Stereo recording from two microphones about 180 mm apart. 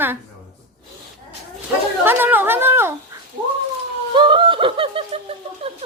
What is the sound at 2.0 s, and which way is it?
Speech, 10° right (ahead or behind).